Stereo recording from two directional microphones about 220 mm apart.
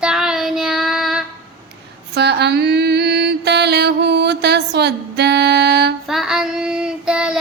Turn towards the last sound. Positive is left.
turn(degrees=-5)  # may be behind; listen again after turning